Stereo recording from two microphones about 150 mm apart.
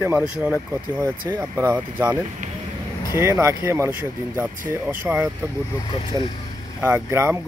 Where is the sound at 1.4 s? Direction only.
25° right (ahead or behind).